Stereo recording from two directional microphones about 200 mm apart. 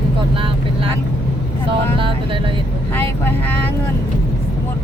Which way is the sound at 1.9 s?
25° right (ahead or behind).